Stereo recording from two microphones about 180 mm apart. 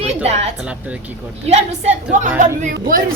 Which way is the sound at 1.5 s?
35° right (ahead or behind).